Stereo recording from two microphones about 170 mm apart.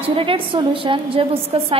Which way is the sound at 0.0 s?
35° right (ahead or behind).